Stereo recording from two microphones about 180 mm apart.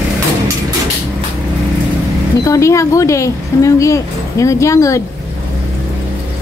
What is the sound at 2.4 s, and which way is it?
Speech, 15° left (ahead or behind).